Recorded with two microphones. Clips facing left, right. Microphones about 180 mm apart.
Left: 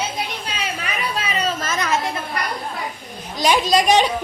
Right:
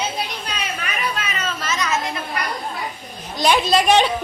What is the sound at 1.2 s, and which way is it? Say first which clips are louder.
Chatter: left 4 dB; 35° left (ahead or behind).